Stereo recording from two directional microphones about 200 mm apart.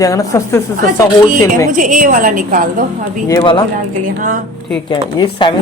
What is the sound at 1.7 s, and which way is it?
A woman's voice, 40° right (ahead or behind).